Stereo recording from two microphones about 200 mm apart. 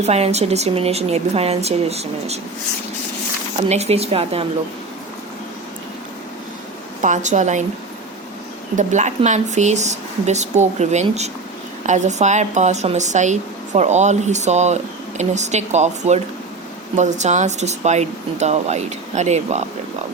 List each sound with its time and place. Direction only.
0.0 s a woman's voice: 35° right (ahead or behind)
3.6 s a woman's voice: 35° right (ahead or behind)
7.0 s a woman's voice: 35° right (ahead or behind)
8.7 s a woman's voice: 35° right (ahead or behind)